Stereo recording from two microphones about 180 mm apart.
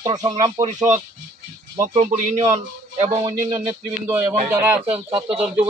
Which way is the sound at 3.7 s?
10° right (ahead or behind).